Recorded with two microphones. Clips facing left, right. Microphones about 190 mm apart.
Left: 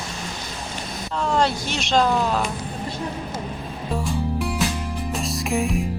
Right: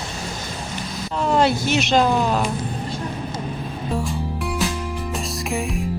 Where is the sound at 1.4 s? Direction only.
5° right (ahead or behind).